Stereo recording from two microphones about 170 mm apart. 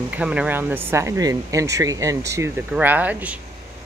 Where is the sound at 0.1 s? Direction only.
5° right (ahead or behind).